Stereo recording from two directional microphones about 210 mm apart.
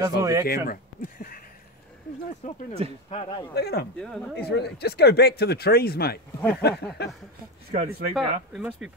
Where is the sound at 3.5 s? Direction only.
50° left (ahead or behind).